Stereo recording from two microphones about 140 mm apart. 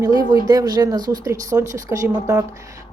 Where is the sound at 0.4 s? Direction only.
25° right (ahead or behind).